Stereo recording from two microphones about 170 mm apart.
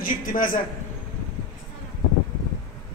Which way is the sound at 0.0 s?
55° left (ahead or behind).